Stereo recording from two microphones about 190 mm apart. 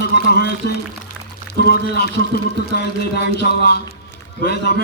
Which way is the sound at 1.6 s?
55° left (ahead or behind).